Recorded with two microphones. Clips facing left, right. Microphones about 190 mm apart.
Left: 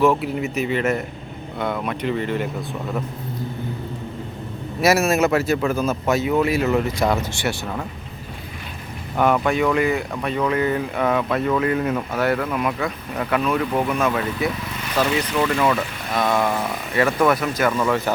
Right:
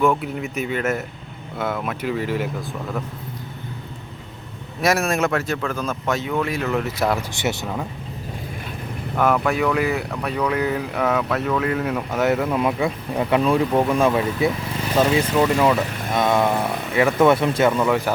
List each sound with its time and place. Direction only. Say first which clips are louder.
0.0 s speech: left 2 dB; 5° left (ahead or behind)
4.8 s speech: left 3 dB; 5° left (ahead or behind)
7.3 s speech: right 1 dB; 20° right (ahead or behind)
9.1 s speech: left 1 dB; centre (ahead or behind)
12.1 s speech: right 4 dB; 20° right (ahead or behind)
15.4 s speech: right 2 dB; 10° right (ahead or behind)